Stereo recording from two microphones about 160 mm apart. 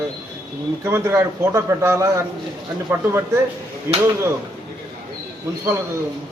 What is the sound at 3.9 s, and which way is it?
Speech, 15° right (ahead or behind).